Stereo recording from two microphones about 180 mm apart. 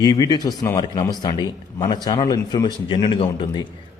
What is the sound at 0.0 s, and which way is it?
A man's voice, 20° left (ahead or behind).